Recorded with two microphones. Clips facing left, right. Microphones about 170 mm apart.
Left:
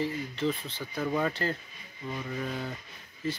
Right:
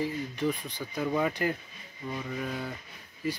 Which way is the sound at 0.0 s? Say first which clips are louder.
Even; 15° right (ahead or behind).